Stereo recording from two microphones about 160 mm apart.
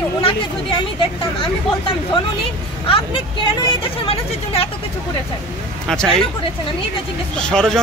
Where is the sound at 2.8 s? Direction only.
35° left (ahead or behind).